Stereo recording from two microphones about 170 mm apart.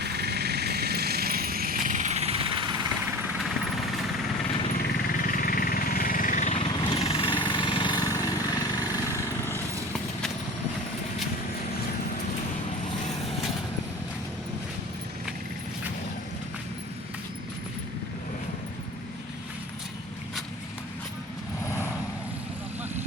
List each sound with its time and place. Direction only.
0.0 s vehicle: 75° right (ahead or behind); by 2.8 s 30° right (ahead or behind)
4.7 s a sound: 60° left (ahead or behind); by 9.6 s 20° left (ahead or behind)
9.9 s vehicle: 5° left (ahead or behind)